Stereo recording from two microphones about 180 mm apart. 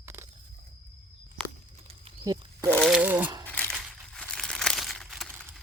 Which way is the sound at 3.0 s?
10° right (ahead or behind).